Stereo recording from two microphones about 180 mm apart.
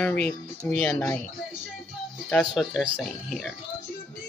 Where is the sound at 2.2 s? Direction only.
Centre (ahead or behind).